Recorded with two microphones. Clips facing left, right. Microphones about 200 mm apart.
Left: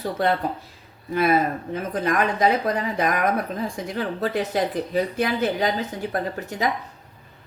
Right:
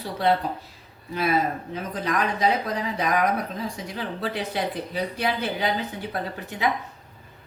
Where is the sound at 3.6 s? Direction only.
50° left (ahead or behind).